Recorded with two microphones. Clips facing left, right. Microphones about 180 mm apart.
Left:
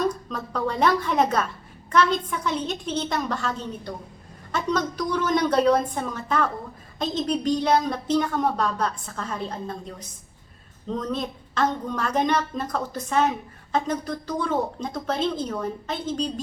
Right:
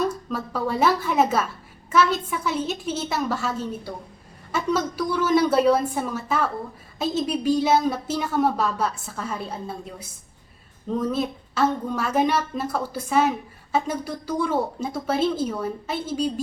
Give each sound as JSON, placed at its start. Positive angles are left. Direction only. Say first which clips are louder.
{"t": 0.0, "sound": "a woman's voice", "louder": "right 1 dB", "side_deg": -5}